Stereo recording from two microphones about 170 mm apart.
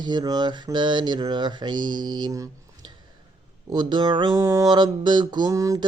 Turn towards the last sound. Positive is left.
turn(degrees=-20)  # may be behind; listen again after turning